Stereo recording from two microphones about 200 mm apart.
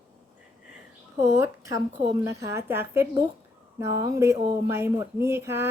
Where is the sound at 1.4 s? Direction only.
15° right (ahead or behind).